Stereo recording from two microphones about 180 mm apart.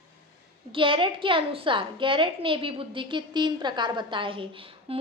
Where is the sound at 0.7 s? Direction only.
30° right (ahead or behind).